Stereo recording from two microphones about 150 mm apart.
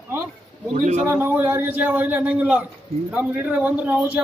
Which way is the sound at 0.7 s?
55° right (ahead or behind).